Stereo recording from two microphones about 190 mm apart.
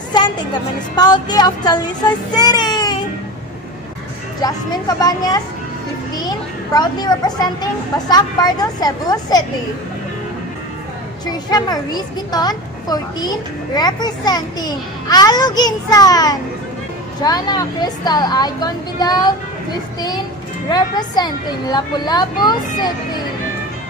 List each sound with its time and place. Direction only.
0.1 s a child's voice: 20° left (ahead or behind)
4.4 s a child's voice: 20° left (ahead or behind)
11.5 s a child's voice: 20° left (ahead or behind)
20.7 s a child's voice: 20° left (ahead or behind)